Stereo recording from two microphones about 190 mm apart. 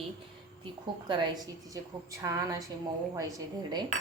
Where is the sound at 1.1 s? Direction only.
25° right (ahead or behind).